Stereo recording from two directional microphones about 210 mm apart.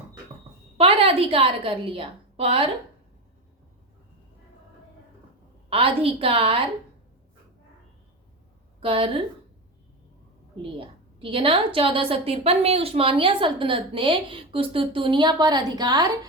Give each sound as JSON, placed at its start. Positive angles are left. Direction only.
{"t": 0.8, "sound": "a woman's voice", "side_deg": -25}
{"t": 5.7, "sound": "a woman's voice", "side_deg": -25}
{"t": 8.8, "sound": "a woman's voice", "side_deg": -25}
{"t": 10.6, "sound": "a woman's voice", "side_deg": -25}